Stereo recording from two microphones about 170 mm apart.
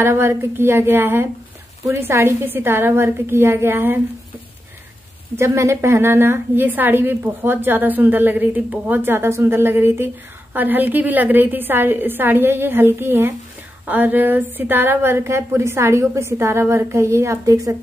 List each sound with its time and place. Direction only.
0.0 s a woman's voice: 15° right (ahead or behind)
5.3 s a woman's voice: 15° right (ahead or behind)